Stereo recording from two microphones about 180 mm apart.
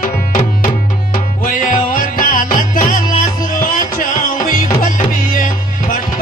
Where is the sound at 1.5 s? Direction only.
50° left (ahead or behind).